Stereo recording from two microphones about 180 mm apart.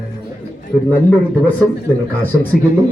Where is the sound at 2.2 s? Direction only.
10° left (ahead or behind).